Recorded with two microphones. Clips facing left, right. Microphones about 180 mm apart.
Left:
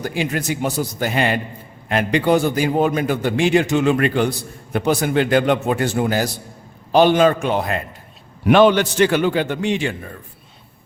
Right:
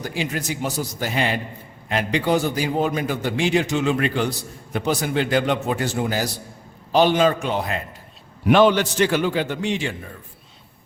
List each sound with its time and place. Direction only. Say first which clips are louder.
0.0 s a man's voice: left 4 dB; 55° left (ahead or behind)